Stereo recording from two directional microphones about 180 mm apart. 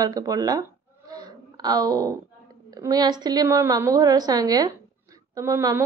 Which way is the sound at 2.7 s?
20° right (ahead or behind).